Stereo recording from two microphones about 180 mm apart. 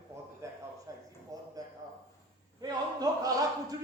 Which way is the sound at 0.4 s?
15° right (ahead or behind).